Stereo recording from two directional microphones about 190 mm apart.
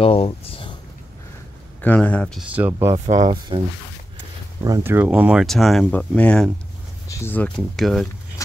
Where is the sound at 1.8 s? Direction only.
5° left (ahead or behind).